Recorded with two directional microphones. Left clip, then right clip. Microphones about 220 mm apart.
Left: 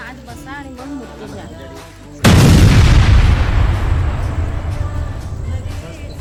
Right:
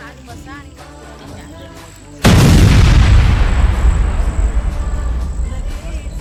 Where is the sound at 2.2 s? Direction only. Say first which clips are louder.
Even; centre (ahead or behind).